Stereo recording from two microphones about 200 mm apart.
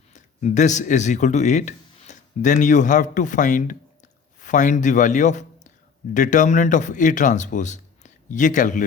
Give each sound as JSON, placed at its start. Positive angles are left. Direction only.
{"t": 0.1, "sound": "a man's voice", "side_deg": 35}